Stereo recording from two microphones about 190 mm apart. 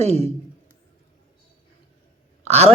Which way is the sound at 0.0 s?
35° right (ahead or behind).